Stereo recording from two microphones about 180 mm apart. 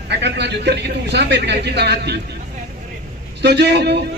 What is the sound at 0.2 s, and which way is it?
A man's voice, 70° right (ahead or behind).